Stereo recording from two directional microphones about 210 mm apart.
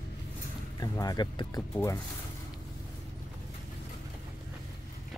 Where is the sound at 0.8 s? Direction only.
20° left (ahead or behind).